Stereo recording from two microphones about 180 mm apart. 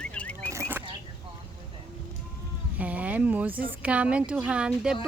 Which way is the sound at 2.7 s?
10° right (ahead or behind).